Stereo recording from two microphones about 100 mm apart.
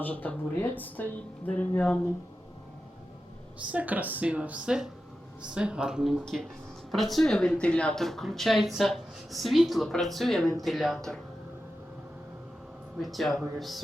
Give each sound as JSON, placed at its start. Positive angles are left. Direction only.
{"t": 0.0, "sound": "speech", "side_deg": 15}
{"t": 3.7, "sound": "speech", "side_deg": -15}
{"t": 13.0, "sound": "speech", "side_deg": 0}